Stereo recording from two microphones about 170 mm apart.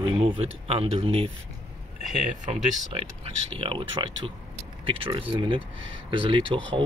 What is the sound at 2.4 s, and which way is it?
Speech, 40° right (ahead or behind).